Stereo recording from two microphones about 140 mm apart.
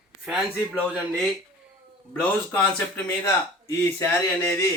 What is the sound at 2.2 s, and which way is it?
Speech, 10° left (ahead or behind).